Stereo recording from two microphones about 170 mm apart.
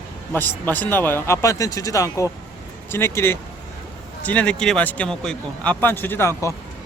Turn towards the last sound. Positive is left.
turn(degrees=15)  # may be behind; listen again after turning